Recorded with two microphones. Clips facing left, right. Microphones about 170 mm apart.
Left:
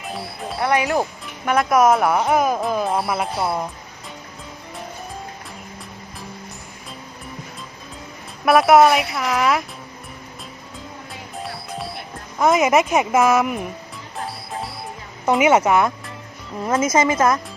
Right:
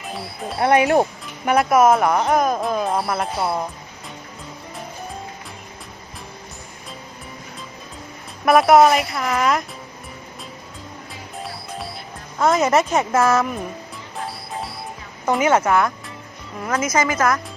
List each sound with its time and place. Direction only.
0.1 s a woman's voice: centre (ahead or behind)
0.6 s speech: 25° right (ahead or behind)
1.5 s a woman's voice: 5° right (ahead or behind)
8.4 s a woman's voice: centre (ahead or behind)
11.4 s music: centre (ahead or behind)
12.5 s speech: 15° left (ahead or behind)
15.3 s a woman's voice: 15° left (ahead or behind)